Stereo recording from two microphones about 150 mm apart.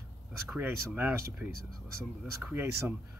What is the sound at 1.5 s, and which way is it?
Speech, 90° right.